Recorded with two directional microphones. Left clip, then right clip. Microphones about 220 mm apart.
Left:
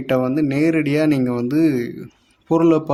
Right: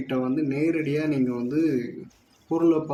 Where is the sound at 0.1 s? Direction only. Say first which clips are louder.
Left 8 dB; 50° left (ahead or behind).